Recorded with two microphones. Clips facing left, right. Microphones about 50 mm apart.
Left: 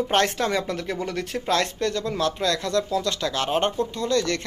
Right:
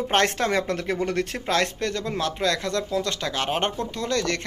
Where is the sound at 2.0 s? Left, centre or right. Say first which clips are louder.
Right 1 dB; right.